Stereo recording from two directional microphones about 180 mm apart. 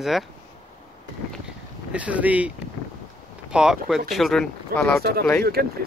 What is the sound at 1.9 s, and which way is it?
Speech, 10° right (ahead or behind).